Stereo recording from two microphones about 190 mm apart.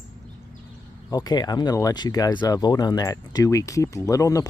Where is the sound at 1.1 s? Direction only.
20° left (ahead or behind).